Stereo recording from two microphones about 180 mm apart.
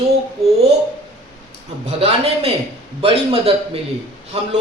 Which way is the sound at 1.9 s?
35° right (ahead or behind).